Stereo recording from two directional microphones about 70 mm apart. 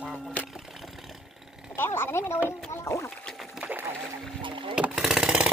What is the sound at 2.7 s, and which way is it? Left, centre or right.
Rowboat, left.